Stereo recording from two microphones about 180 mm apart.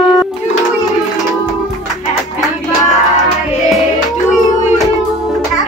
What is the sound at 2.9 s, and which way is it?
Music, 40° left (ahead or behind).